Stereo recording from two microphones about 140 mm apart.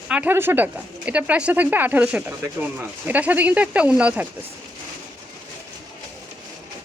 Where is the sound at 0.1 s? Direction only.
15° right (ahead or behind).